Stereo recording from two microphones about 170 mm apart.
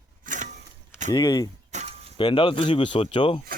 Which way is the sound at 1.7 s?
45° right (ahead or behind).